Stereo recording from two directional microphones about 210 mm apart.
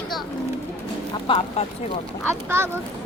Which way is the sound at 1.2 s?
25° left (ahead or behind).